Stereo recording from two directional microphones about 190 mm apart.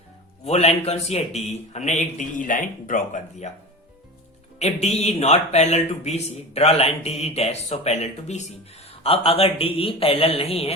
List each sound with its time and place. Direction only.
0.4 s a man's voice: 35° left (ahead or behind)
4.6 s a man's voice: 35° left (ahead or behind)